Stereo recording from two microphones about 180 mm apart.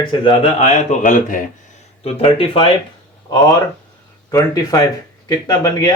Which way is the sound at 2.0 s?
30° left (ahead or behind).